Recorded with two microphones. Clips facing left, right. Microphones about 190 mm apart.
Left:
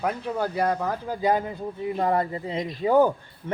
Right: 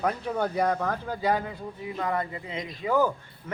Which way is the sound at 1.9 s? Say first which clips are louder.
Left 5 dB; 35° left (ahead or behind).